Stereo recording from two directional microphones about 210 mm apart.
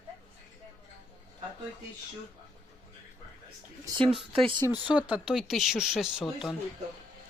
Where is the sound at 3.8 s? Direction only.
25° right (ahead or behind).